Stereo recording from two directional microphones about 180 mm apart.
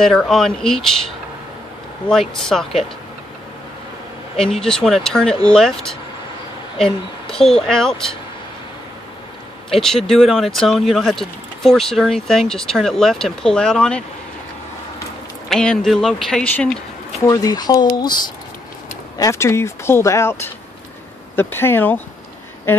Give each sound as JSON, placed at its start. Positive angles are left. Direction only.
{"t": 0.0, "sound": "speech", "side_deg": 0}
{"t": 2.0, "sound": "speech", "side_deg": 5}
{"t": 4.4, "sound": "speech", "side_deg": 5}
{"t": 9.7, "sound": "speech", "side_deg": 0}
{"t": 15.5, "sound": "speech", "side_deg": 5}
{"t": 17.2, "sound": "speech", "side_deg": 20}
{"t": 19.1, "sound": "speech", "side_deg": 15}